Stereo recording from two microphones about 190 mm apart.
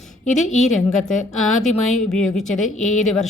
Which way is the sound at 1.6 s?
Centre (ahead or behind).